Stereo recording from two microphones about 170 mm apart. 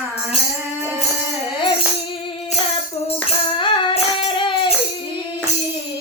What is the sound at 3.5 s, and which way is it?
Music, 30° left (ahead or behind).